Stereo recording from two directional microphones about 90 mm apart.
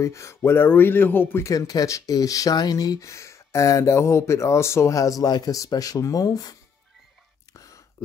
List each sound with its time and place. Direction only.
0.0 s speech: 35° left (ahead or behind)
1.5 s speech: 40° left (ahead or behind)
7.5 s a sound: 40° left (ahead or behind)